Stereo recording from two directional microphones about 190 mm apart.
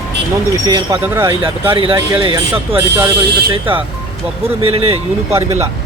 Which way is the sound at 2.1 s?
25° right (ahead or behind).